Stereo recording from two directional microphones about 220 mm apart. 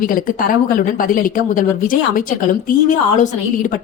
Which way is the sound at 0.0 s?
40° left (ahead or behind).